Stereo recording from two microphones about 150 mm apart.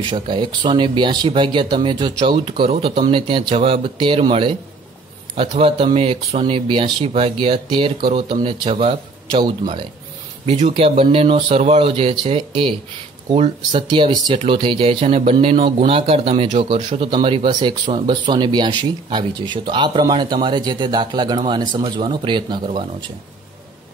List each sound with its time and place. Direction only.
0.1 s speech: 30° right (ahead or behind)